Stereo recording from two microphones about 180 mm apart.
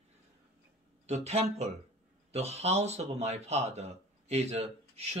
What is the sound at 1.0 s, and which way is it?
A man's voice, 35° right (ahead or behind).